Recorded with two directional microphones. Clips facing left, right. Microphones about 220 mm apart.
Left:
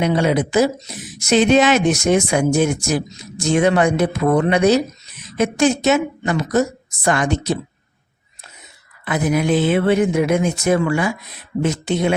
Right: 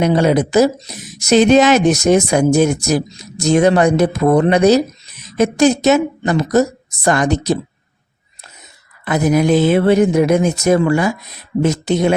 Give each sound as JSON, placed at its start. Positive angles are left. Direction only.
{"t": 0.0, "sound": "speech", "side_deg": -40}
{"t": 9.0, "sound": "speech", "side_deg": -40}